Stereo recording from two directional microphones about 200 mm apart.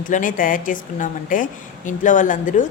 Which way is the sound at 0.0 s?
40° left (ahead or behind).